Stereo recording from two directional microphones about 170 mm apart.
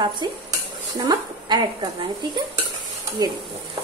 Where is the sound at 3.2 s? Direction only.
25° right (ahead or behind).